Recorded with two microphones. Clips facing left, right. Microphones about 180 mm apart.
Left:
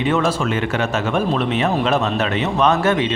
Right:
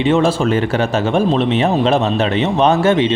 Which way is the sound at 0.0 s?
30° right (ahead or behind).